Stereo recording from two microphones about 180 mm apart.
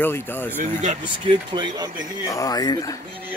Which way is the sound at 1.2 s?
25° right (ahead or behind).